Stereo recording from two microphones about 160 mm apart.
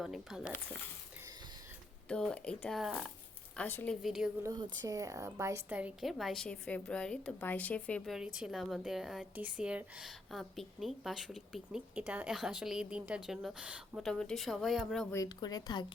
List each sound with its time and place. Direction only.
0.0 s a woman's voice: centre (ahead or behind)
2.0 s a woman's voice: 5° left (ahead or behind)
3.6 s a woman's voice: 10° left (ahead or behind)
4.0 s a woman's voice: centre (ahead or behind)
4.4 s a woman's voice: 25° right (ahead or behind); by 15.0 s centre (ahead or behind)
15.1 s speech: 20° left (ahead or behind)